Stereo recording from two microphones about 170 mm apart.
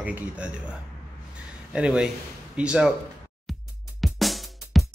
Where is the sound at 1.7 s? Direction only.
5° right (ahead or behind).